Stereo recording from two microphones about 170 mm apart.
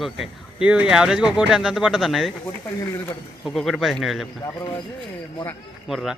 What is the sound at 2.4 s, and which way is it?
Speech, 15° left (ahead or behind).